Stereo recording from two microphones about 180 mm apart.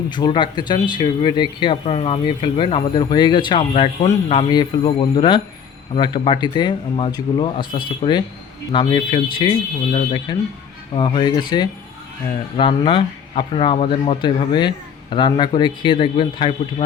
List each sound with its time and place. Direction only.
0.1 s speech: 25° left (ahead or behind)